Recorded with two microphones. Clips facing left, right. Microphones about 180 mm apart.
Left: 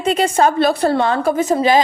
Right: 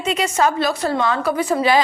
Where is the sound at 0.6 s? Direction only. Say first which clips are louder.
Left 5 dB; 55° left (ahead or behind).